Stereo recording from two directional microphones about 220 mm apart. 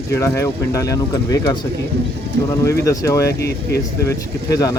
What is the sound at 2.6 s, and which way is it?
Speech, 15° left (ahead or behind).